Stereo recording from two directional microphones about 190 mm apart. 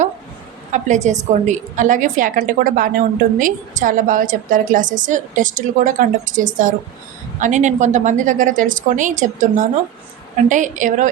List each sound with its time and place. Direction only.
0.7 s a woman's voice: 40° right (ahead or behind)